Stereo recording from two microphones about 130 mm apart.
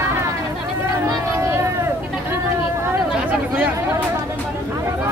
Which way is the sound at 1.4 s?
25° right (ahead or behind).